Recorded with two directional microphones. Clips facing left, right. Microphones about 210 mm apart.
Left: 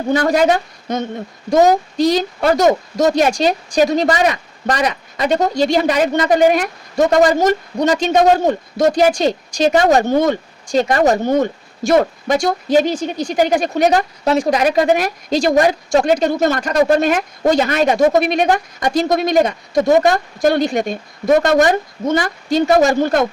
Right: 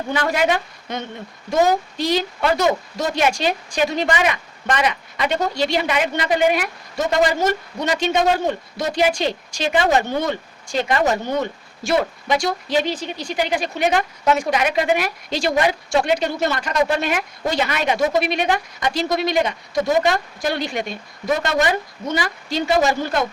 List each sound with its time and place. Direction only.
0.1 s speech: 40° left (ahead or behind)